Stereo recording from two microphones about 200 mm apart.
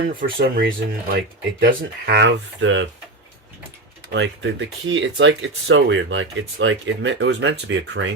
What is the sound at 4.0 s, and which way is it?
Speech, 65° right (ahead or behind).